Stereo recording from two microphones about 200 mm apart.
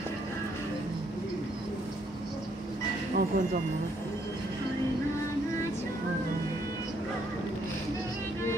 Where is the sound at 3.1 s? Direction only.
45° right (ahead or behind).